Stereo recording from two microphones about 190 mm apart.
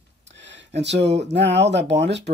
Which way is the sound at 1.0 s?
65° right (ahead or behind).